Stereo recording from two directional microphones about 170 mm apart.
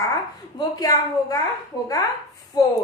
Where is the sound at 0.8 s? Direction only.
20° left (ahead or behind).